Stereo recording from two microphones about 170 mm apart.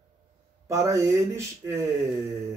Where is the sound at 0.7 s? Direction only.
15° right (ahead or behind).